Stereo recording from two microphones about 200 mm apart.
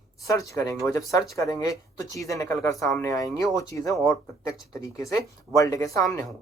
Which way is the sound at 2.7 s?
Centre (ahead or behind).